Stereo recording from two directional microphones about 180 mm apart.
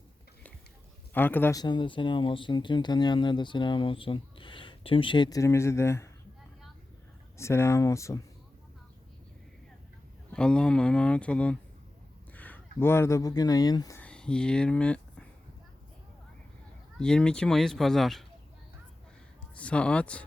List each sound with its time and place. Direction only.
1.1 s speech: 10° left (ahead or behind)
1.6 s speech: 25° left (ahead or behind)
7.3 s speech: 15° left (ahead or behind)
10.3 s speech: 5° left (ahead or behind); by 14.0 s 20° left (ahead or behind)
14.0 s speech: 5° left (ahead or behind)
17.0 s speech: 5° left (ahead or behind)
19.5 s speech: 5° left (ahead or behind)